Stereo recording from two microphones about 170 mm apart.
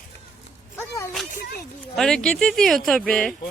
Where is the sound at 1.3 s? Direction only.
60° left (ahead or behind).